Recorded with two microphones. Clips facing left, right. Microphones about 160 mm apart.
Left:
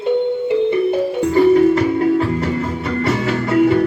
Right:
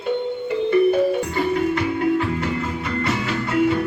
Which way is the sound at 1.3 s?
35° left (ahead or behind).